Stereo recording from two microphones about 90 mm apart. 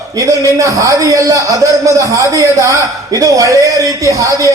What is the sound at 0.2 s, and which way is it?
A man's voice, 35° right (ahead or behind).